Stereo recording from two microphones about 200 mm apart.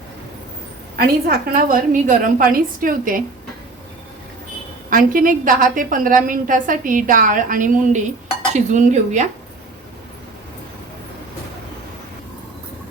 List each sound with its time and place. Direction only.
0.9 s a woman's voice: 50° right (ahead or behind)
4.9 s a woman's voice: 45° right (ahead or behind)
8.5 s cutlery: 35° right (ahead or behind)